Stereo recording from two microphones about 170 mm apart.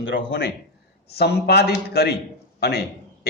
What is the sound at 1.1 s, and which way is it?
A man's voice, 70° left (ahead or behind).